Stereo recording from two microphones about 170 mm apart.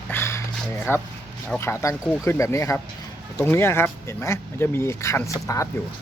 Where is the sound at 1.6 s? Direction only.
15° left (ahead or behind).